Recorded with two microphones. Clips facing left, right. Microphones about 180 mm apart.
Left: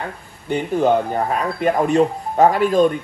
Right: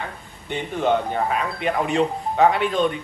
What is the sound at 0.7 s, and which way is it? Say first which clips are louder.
Speech: left 3 dB; 40° left (ahead or behind).